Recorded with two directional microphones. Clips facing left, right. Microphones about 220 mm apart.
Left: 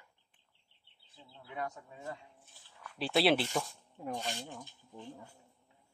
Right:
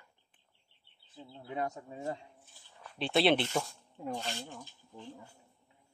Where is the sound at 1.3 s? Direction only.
30° right (ahead or behind).